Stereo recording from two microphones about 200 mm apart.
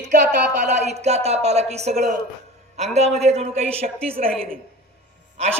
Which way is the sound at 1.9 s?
50° right (ahead or behind).